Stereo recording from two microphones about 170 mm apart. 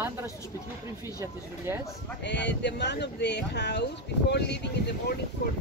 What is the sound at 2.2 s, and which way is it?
Speech, 90° left.